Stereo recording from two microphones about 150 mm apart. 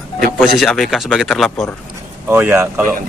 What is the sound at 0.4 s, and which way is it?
Speech, centre (ahead or behind).